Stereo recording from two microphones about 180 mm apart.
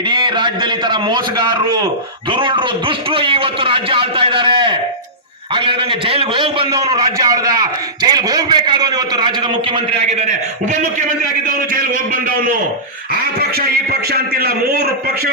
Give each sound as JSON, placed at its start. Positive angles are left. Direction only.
{"t": 0.1, "sound": "a man's voice", "side_deg": -25}
{"t": 9.7, "sound": "a man's voice", "side_deg": -35}
{"t": 14.1, "sound": "a man's voice", "side_deg": -60}